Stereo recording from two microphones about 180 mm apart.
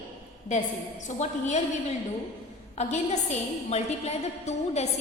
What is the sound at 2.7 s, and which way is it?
A woman's voice, 40° left (ahead or behind).